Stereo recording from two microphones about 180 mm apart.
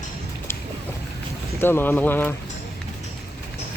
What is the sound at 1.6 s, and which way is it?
Speech, 10° left (ahead or behind).